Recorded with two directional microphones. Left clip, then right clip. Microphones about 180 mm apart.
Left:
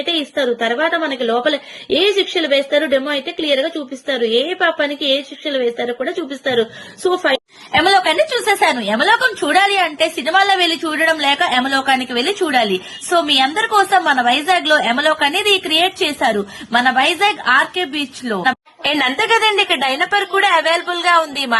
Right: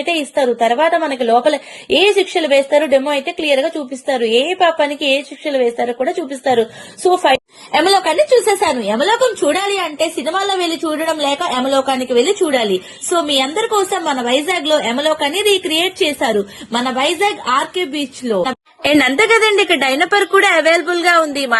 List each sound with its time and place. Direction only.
0.0 s a woman's voice: 25° right (ahead or behind)
7.7 s a woman's voice: 10° right (ahead or behind)
18.8 s a woman's voice: 15° right (ahead or behind)